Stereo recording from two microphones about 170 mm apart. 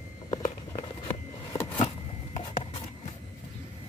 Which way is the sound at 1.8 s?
45° left (ahead or behind).